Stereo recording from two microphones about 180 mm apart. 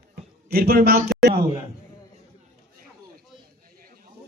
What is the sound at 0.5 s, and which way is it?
Speech, 55° right (ahead or behind).